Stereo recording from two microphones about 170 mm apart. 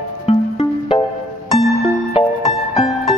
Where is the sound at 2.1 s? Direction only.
40° left (ahead or behind).